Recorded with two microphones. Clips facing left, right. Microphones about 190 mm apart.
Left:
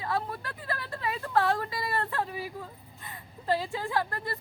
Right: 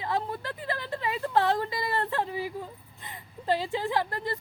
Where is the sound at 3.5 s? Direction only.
20° right (ahead or behind).